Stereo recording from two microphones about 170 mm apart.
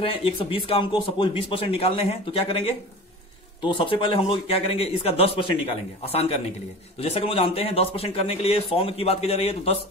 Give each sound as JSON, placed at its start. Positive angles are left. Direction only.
{"t": 0.0, "sound": "speech", "side_deg": 35}